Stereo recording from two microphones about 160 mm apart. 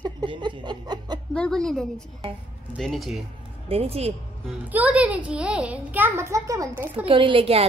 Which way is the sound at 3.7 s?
40° right (ahead or behind).